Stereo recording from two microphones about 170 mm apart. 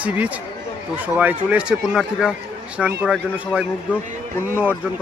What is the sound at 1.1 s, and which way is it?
A man's voice, 10° right (ahead or behind).